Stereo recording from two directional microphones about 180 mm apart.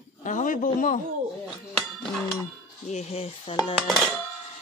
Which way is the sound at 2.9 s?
35° left (ahead or behind).